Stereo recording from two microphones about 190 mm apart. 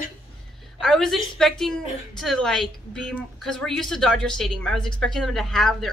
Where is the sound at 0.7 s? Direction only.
Centre (ahead or behind).